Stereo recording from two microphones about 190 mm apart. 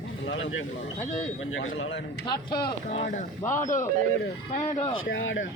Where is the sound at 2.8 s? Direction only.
40° left (ahead or behind).